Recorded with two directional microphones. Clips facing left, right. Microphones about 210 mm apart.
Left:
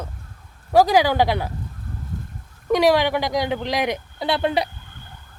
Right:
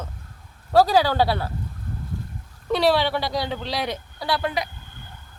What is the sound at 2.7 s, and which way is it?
Speech, 15° left (ahead or behind).